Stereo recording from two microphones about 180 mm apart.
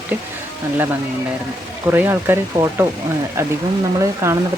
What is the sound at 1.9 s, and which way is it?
Speech, 10° right (ahead or behind).